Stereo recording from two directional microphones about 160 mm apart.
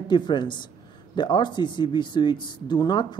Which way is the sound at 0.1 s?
30° left (ahead or behind).